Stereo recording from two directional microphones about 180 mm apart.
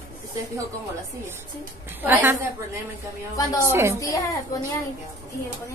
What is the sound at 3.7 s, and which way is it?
Speech, 15° right (ahead or behind).